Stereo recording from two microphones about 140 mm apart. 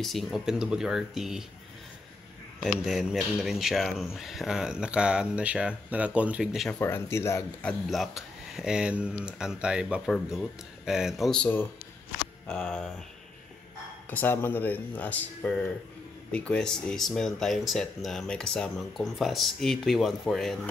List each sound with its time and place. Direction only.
0.0 s speech: centre (ahead or behind)
2.6 s speech: 5° right (ahead or behind)
6.7 s speech: 15° left (ahead or behind)
7.6 s speech: centre (ahead or behind)
14.1 s speech: 15° left (ahead or behind)